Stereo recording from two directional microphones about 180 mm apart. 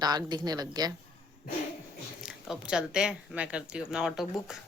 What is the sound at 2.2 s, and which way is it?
Speech, 5° right (ahead or behind).